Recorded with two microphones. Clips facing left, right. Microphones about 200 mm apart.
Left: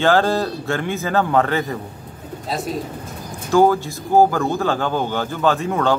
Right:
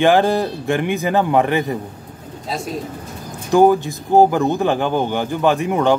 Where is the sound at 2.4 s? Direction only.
Centre (ahead or behind).